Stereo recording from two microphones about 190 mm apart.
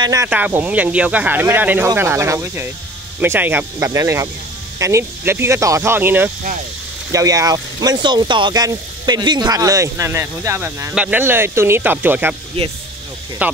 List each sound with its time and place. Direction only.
0.0 s speech: 20° right (ahead or behind)
12.6 s speech: 30° right (ahead or behind)
13.4 s speech: 10° right (ahead or behind)